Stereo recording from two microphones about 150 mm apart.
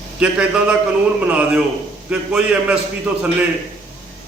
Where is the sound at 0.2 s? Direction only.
5° right (ahead or behind).